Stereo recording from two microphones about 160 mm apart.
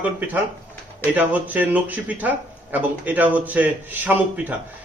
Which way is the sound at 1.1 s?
10° right (ahead or behind).